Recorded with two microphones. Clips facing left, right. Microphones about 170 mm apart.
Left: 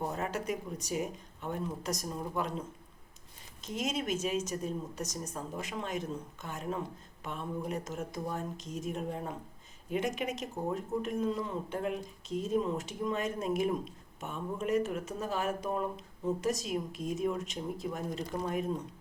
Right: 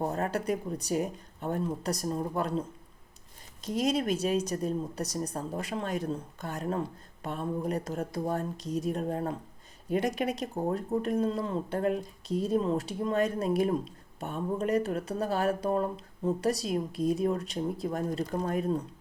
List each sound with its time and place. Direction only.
0.3 s speech: 35° right (ahead or behind)